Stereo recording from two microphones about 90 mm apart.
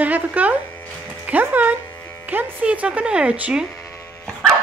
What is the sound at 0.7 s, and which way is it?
Electric shaver, 20° left (ahead or behind).